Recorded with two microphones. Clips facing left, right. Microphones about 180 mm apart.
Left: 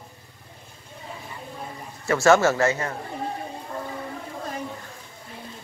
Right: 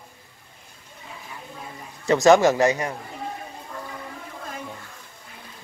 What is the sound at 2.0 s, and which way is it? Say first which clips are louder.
Speech: right 3 dB; 20° right (ahead or behind).